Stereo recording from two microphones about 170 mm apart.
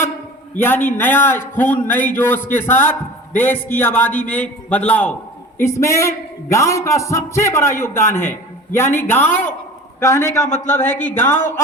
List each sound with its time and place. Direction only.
0.6 s a man's voice: 10° left (ahead or behind)